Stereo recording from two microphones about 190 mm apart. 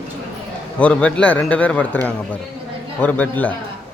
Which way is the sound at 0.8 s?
5° left (ahead or behind).